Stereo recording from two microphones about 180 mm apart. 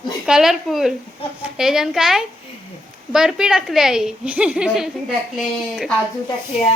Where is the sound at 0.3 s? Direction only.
Centre (ahead or behind).